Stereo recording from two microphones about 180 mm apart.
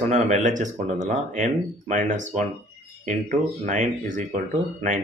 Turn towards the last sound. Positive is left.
turn(degrees=-40)  # may be behind; listen again after turning